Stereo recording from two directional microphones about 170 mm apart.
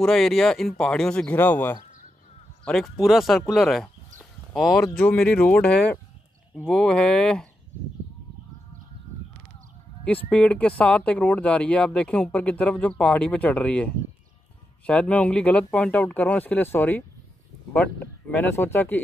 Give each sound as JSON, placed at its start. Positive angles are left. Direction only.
{"t": 0.0, "sound": "speech", "side_deg": 0}
{"t": 4.8, "sound": "speech", "side_deg": 10}
{"t": 10.3, "sound": "speech", "side_deg": 5}
{"t": 14.9, "sound": "speech", "side_deg": 5}